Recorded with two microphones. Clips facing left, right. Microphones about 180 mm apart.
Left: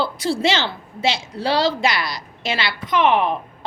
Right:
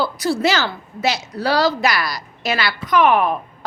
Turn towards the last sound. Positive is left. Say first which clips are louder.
# right 2 dB
turn(degrees=25)  # may be behind; listen again after turning